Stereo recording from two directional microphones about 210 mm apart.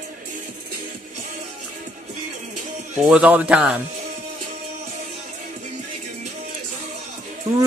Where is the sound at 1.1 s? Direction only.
35° right (ahead or behind).